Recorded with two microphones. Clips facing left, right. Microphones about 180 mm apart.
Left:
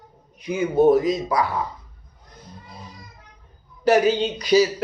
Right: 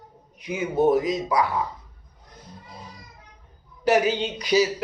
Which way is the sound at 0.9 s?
15° right (ahead or behind).